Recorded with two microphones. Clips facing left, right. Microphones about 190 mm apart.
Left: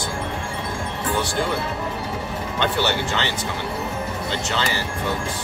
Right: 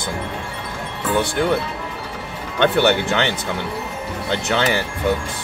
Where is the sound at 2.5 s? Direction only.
60° right (ahead or behind).